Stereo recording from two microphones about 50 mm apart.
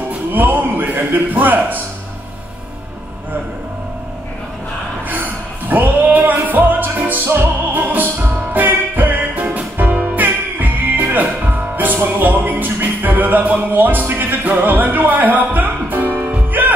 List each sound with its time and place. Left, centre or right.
0.3 s a man's voice: right
5.1 s a sound: right
6.3 s music: right
14.0 s music: right
14.4 s music: right